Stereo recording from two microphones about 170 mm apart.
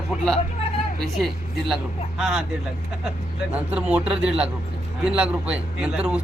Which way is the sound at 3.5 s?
5° right (ahead or behind).